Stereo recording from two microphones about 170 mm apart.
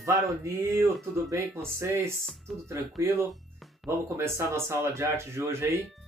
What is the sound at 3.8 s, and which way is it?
Speech, 15° right (ahead or behind).